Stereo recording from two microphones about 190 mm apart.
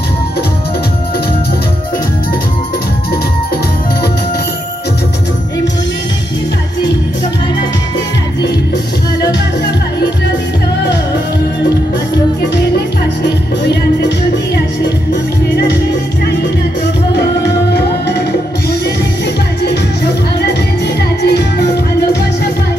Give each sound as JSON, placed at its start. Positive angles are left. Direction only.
{"t": 12.5, "sound": "music", "side_deg": 65}
{"t": 16.8, "sound": "music", "side_deg": 60}
{"t": 20.4, "sound": "music", "side_deg": 60}